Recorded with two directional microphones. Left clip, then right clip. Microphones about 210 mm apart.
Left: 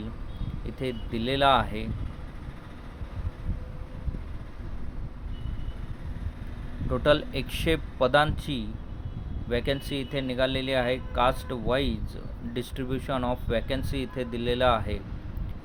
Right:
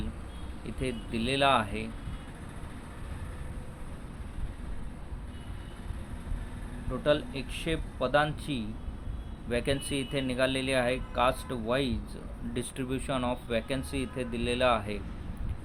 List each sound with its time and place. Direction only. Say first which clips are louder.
0.8 s speech: left 2 dB; 15° left (ahead or behind)
6.9 s speech: left 4 dB; 30° left (ahead or behind); by 15.0 s 10° left (ahead or behind)